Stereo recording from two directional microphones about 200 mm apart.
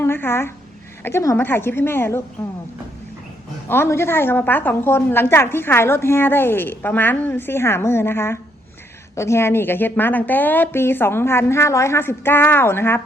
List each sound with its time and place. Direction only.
0.0 s a woman's voice: 10° left (ahead or behind)
3.7 s a woman's voice: 10° left (ahead or behind)